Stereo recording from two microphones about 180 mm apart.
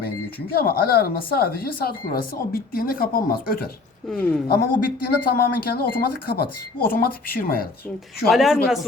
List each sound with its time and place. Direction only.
0.5 s speech: 55° left (ahead or behind)
4.1 s speech: 10° left (ahead or behind)
4.4 s speech: 55° left (ahead or behind)
8.3 s speech: centre (ahead or behind)